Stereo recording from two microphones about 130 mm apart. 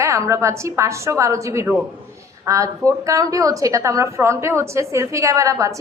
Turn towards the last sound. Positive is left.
turn(degrees=-25)  # may be behind; listen again after turning